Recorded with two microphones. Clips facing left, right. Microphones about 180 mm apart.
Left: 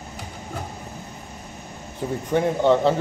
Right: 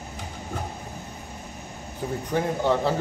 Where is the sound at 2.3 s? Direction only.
25° left (ahead or behind).